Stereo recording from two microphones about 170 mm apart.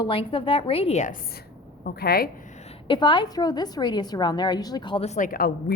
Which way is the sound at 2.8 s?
30° left (ahead or behind).